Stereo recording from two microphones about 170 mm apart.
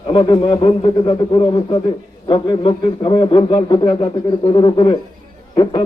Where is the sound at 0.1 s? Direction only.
30° left (ahead or behind).